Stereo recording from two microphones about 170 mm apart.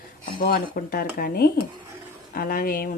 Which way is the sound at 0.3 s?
60° left (ahead or behind).